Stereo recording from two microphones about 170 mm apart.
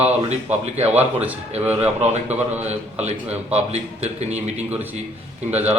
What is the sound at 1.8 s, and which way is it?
A man's voice, 40° right (ahead or behind).